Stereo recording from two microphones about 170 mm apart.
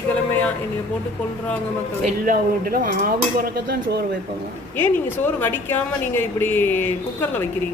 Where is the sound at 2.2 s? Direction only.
55° right (ahead or behind).